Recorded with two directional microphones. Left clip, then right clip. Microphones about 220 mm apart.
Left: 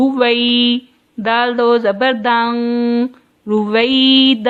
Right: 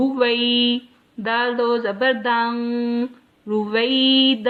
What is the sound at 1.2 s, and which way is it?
Speech, 50° left (ahead or behind).